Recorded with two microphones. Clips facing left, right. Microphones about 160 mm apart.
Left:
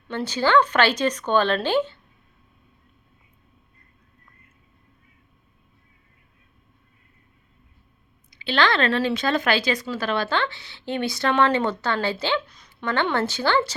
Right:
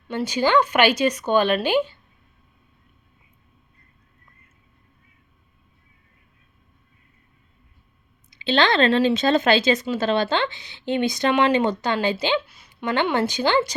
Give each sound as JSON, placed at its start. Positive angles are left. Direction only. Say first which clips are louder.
{"t": 0.1, "sound": "speech", "louder": "right 1 dB", "side_deg": -10}
{"t": 8.3, "sound": "speech", "louder": "right 2 dB", "side_deg": -25}